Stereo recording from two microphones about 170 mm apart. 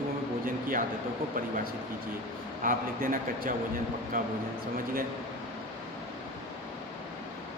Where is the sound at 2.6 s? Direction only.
55° right (ahead or behind).